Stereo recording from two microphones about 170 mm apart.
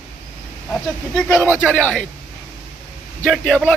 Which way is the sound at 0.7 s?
5° left (ahead or behind).